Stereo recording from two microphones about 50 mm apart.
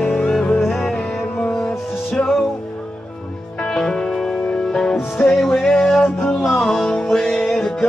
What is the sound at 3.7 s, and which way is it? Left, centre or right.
Music, centre.